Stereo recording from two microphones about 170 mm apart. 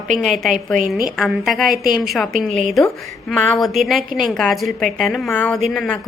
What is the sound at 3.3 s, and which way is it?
A woman's voice, 5° left (ahead or behind).